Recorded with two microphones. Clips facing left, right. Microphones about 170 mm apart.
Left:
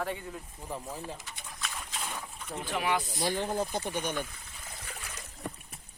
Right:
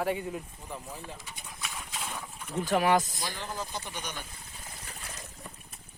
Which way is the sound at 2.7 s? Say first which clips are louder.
Right 6 dB; 45° right (ahead or behind).